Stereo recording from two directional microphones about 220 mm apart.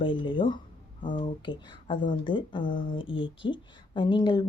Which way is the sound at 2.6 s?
40° left (ahead or behind).